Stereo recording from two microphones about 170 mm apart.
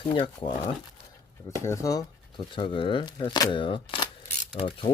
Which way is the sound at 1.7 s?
20° left (ahead or behind).